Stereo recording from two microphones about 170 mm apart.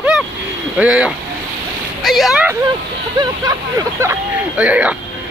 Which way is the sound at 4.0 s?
15° right (ahead or behind).